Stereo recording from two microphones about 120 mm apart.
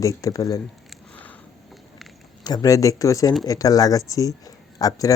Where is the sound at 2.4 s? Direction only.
35° left (ahead or behind).